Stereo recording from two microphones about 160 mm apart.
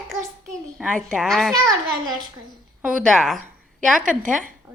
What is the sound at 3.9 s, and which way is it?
Speech, 55° right (ahead or behind).